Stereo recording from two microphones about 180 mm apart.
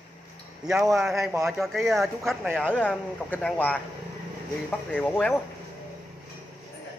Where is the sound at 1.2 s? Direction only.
15° right (ahead or behind).